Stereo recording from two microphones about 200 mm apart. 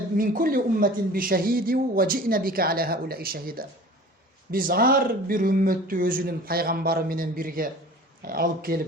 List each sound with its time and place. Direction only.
0.2 s a man's voice: 45° right (ahead or behind)